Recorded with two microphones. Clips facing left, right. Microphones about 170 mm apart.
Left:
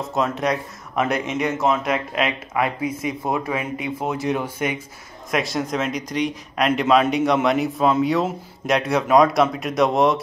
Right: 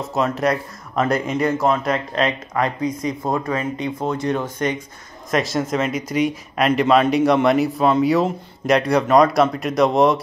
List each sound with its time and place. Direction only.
0.1 s a man's voice: centre (ahead or behind)